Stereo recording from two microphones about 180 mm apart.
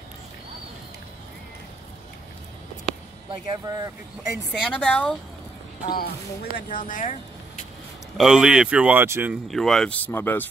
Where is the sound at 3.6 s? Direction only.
20° right (ahead or behind).